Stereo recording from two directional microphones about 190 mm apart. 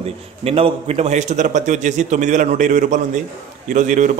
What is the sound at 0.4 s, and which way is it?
A man's voice, 30° right (ahead or behind).